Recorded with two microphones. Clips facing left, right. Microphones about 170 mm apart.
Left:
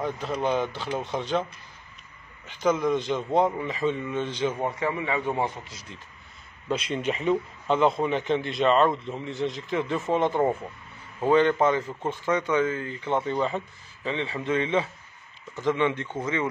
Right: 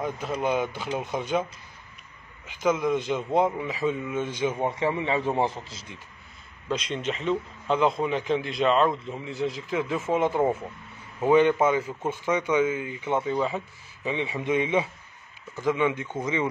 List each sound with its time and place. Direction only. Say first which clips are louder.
0.0 s a man's voice: even; 5° right (ahead or behind)
4.7 s a man's voice: right 2 dB; 25° right (ahead or behind)
6.7 s a man's voice: left 2 dB; 5° left (ahead or behind); by 16.4 s 15° right (ahead or behind)